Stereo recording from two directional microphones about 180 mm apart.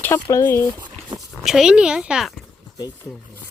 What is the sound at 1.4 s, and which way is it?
Speech, centre (ahead or behind).